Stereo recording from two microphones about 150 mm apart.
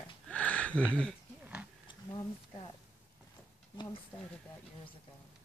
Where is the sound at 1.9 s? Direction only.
30° left (ahead or behind).